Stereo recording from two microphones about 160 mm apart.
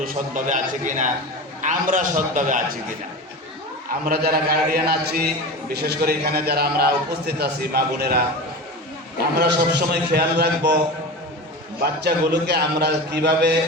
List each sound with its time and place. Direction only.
0.0 s a man's voice: 60° right (ahead or behind)
4.0 s a man's voice: 75° right (ahead or behind)
9.4 s a man's voice: 90° right
12.0 s a man's voice: 90° right